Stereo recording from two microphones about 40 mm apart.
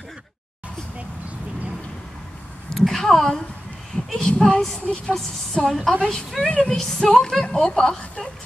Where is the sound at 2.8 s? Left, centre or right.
Centre.